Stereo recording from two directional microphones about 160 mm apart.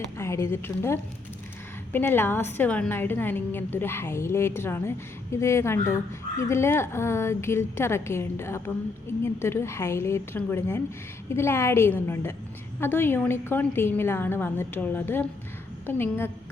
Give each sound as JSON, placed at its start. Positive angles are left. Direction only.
{"t": 0.2, "sound": "a woman's voice", "side_deg": 15}